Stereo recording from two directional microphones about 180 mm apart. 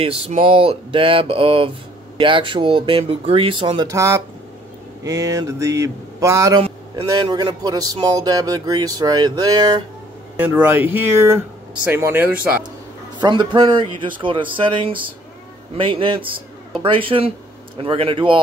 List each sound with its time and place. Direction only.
0.0 s speech: 30° right (ahead or behind)
10.3 s speech: 10° right (ahead or behind)
13.2 s speech: 25° right (ahead or behind)